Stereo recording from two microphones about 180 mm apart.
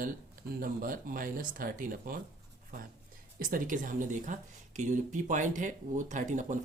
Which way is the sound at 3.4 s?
50° right (ahead or behind).